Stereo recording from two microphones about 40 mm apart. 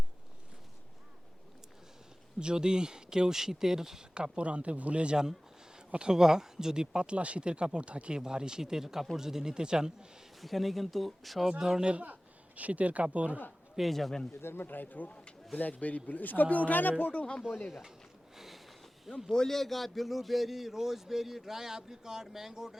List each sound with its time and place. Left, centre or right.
2.4 s a man's voice: right
4.1 s speech: right
5.9 s speech: right
8.2 s a man's voice: centre
10.4 s speech: centre
11.6 s a man's voice: centre
11.9 s speech: right
13.9 s speech: centre
14.4 s a man's voice: left
17.7 s speech: centre
18.3 s a sound: centre
19.3 s a man's voice: centre